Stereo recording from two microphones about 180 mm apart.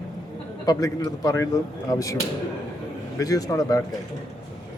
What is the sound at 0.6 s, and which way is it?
Speech, 20° left (ahead or behind).